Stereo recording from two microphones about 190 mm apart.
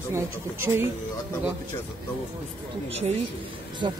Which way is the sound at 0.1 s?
15° right (ahead or behind).